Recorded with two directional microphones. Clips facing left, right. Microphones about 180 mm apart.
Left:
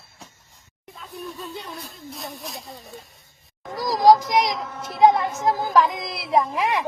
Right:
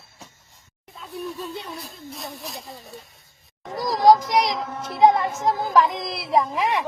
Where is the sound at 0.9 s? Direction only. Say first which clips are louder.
Right 3 dB; centre (ahead or behind).